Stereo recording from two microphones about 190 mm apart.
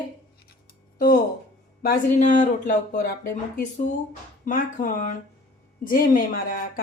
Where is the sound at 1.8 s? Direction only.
40° left (ahead or behind).